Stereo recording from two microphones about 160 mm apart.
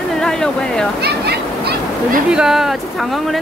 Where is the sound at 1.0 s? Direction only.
85° right.